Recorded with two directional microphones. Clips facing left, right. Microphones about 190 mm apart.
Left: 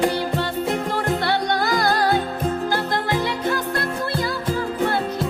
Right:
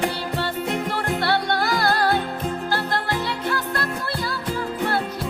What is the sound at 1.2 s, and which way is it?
Music, 20° left (ahead or behind).